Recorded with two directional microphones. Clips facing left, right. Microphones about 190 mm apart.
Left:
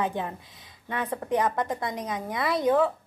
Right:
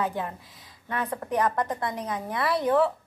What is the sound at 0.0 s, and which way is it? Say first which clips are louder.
Speech: even; 20° left (ahead or behind).